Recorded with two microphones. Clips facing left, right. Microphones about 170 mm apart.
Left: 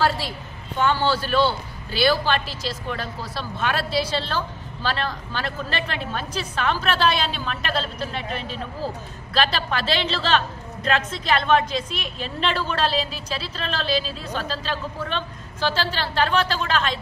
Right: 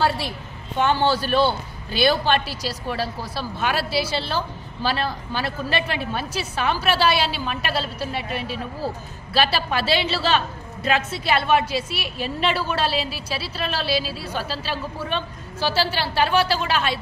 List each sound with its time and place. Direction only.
0.7 s a man's voice: 20° right (ahead or behind)
3.3 s a woman's voice: 5° right (ahead or behind)